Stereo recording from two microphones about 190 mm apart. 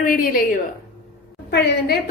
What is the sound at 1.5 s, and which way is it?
Speech, 60° left (ahead or behind).